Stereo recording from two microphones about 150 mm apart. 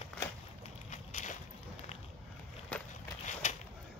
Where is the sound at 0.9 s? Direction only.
55° left (ahead or behind).